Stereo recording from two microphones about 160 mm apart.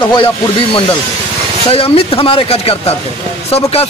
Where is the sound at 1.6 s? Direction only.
35° left (ahead or behind).